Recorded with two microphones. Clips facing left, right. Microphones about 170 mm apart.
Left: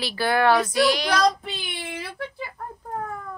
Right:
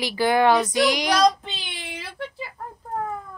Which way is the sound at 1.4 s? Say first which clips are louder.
Left 3 dB; centre (ahead or behind).